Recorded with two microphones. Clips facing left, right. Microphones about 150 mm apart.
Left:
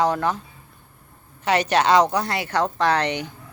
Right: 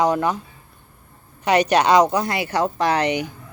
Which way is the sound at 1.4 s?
15° right (ahead or behind).